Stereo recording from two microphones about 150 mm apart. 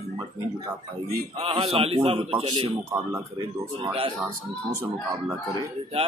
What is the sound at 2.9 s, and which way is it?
Speech, 20° right (ahead or behind).